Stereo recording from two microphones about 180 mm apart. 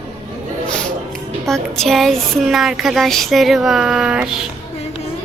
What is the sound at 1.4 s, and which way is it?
Speech, 5° left (ahead or behind).